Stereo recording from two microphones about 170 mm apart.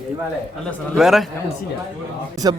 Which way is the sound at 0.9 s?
Centre (ahead or behind).